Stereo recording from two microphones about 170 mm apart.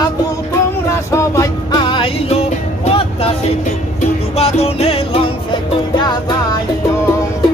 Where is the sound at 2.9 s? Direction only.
35° left (ahead or behind).